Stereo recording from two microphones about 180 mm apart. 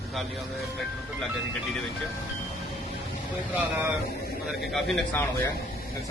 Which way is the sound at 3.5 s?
10° right (ahead or behind).